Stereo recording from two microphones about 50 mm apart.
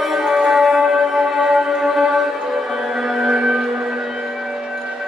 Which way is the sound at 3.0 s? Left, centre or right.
Centre.